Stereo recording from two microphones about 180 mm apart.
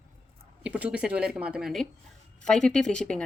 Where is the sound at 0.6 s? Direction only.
5° right (ahead or behind).